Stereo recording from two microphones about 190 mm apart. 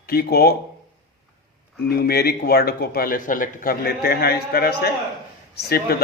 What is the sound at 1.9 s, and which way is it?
A man's voice, 55° left (ahead or behind).